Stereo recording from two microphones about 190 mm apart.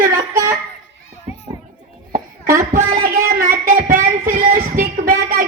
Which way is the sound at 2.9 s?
45° right (ahead or behind).